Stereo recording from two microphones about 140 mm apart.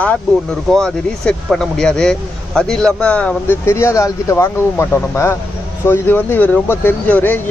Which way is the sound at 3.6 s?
20° left (ahead or behind).